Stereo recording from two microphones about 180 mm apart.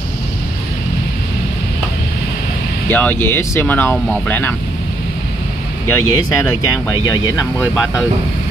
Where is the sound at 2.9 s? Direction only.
10° left (ahead or behind).